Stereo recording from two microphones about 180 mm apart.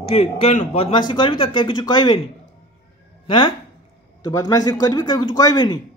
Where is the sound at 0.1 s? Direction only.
35° left (ahead or behind).